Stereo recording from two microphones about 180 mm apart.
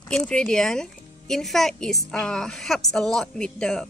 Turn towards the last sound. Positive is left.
turn(degrees=5)  # may be behind; listen again after turning